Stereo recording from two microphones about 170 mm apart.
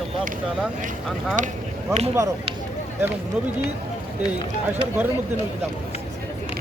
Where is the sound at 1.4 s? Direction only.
50° right (ahead or behind).